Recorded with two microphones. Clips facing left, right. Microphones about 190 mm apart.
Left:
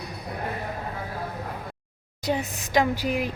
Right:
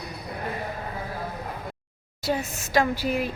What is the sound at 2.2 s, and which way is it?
A woman's voice, 15° left (ahead or behind).